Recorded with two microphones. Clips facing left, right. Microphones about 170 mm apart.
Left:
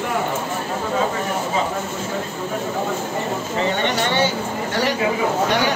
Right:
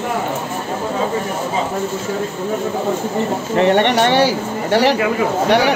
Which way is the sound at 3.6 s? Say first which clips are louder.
Right 9 dB; 65° right (ahead or behind).